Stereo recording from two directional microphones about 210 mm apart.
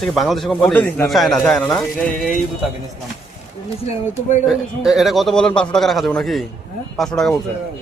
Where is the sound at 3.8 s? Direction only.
30° left (ahead or behind).